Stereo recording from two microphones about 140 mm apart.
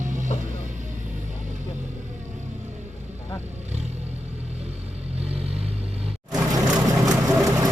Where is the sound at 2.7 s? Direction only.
55° right (ahead or behind).